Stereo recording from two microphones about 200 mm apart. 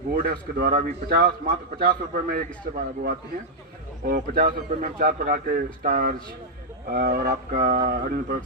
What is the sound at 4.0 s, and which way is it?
A man's voice, 45° right (ahead or behind).